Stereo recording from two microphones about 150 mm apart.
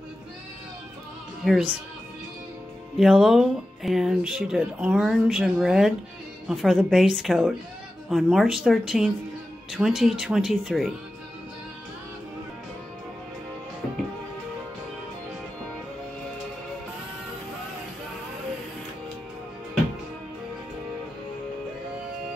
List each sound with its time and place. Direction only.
1.4 s speech: centre (ahead or behind)
3.0 s speech: 5° right (ahead or behind)